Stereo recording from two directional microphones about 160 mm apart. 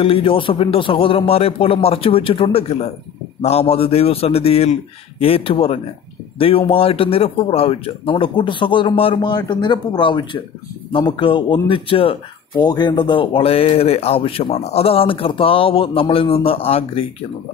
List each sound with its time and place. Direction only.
0.0 s speech: 35° left (ahead or behind)